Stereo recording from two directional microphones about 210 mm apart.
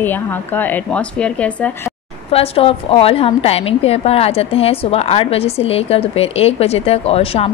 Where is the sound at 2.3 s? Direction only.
30° left (ahead or behind).